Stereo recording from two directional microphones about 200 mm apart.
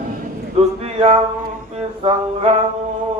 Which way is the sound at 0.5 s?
30° right (ahead or behind).